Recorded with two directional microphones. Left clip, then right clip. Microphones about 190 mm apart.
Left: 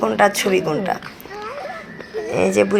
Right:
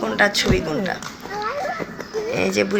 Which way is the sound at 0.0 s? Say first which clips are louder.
Left 3 dB; centre (ahead or behind).